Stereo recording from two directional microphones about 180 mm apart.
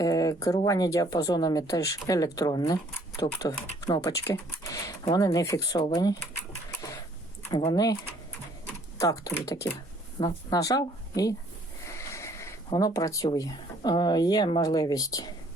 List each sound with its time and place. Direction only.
0.0 s a sound: 20° left (ahead or behind)
0.6 s speech: 20° left (ahead or behind)
7.7 s speech: 20° left (ahead or behind)
9.0 s speech: 20° left (ahead or behind)